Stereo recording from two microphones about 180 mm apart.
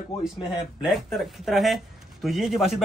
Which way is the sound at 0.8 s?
Centre (ahead or behind).